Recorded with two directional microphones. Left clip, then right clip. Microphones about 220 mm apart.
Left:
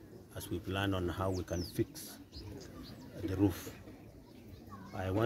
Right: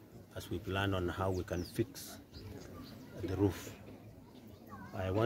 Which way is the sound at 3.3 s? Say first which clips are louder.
Left 1 dB; centre (ahead or behind).